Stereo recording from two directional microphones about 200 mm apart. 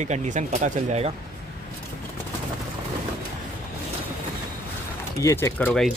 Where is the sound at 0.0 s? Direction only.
35° right (ahead or behind).